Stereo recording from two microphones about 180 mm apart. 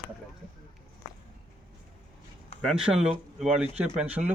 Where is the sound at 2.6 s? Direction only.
5° right (ahead or behind).